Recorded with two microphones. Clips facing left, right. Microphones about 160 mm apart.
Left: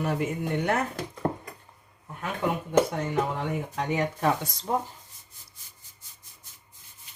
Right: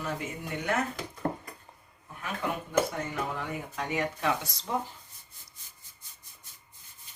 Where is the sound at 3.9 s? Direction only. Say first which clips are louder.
Left 4 dB; 45° left (ahead or behind).